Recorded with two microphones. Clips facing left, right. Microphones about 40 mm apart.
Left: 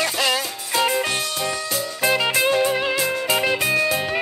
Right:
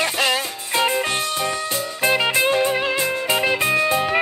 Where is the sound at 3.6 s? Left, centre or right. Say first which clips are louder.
Right 2 dB; right.